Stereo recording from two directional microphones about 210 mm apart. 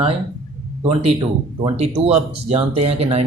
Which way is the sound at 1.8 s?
30° right (ahead or behind).